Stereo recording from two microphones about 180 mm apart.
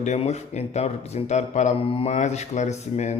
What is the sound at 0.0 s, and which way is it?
Speech, 40° left (ahead or behind).